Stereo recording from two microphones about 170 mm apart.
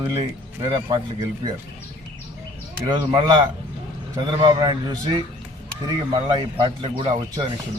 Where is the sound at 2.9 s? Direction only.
25° right (ahead or behind).